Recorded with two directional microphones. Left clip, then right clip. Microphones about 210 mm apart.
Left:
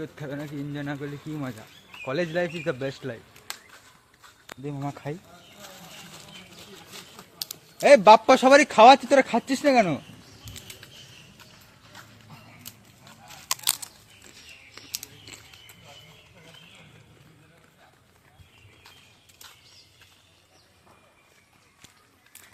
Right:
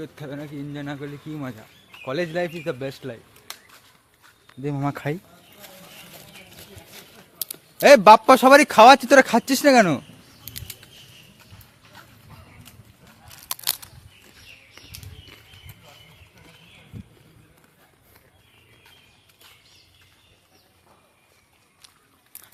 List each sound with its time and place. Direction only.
0.0 s speech: 5° right (ahead or behind)
4.6 s a man's voice: 50° right (ahead or behind)
7.4 s a man's voice: 40° right (ahead or behind)
10.4 s a sound: 50° right (ahead or behind)